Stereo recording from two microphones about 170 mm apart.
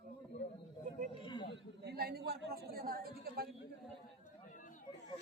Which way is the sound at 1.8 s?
65° right (ahead or behind).